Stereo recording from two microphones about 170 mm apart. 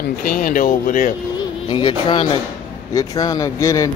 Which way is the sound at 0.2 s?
55° left (ahead or behind).